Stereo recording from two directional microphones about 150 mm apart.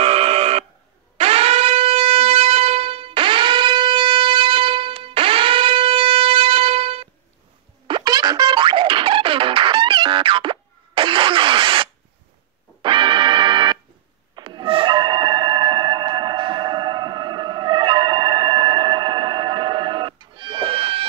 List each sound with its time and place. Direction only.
0.0 s buzzer: 40° right (ahead or behind)
1.1 s shofar: 40° right (ahead or behind)
7.8 s music: 30° right (ahead or behind)